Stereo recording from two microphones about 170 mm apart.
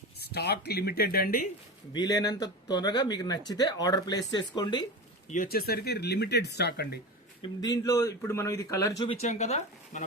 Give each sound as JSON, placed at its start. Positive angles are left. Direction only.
{"t": 0.2, "sound": "speech", "side_deg": 70}
{"t": 1.9, "sound": "speech", "side_deg": 25}
{"t": 5.3, "sound": "speech", "side_deg": 55}
{"t": 7.4, "sound": "speech", "side_deg": 25}
{"t": 9.0, "sound": "speech", "side_deg": 40}